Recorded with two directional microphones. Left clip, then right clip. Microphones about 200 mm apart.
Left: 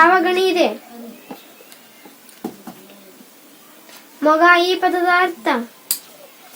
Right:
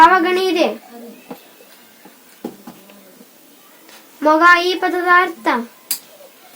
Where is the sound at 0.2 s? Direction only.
40° right (ahead or behind).